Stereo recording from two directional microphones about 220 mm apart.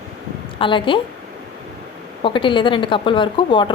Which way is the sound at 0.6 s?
20° left (ahead or behind).